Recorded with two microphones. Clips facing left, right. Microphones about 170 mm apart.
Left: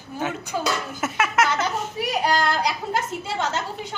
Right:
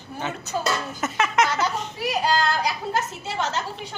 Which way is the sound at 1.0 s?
10° left (ahead or behind).